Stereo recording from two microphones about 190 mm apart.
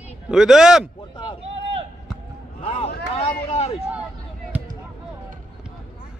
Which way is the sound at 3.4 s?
35° left (ahead or behind).